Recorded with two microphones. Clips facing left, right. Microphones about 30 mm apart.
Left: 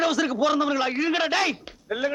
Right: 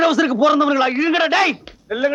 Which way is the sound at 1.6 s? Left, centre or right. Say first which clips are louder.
Right 7 dB; right.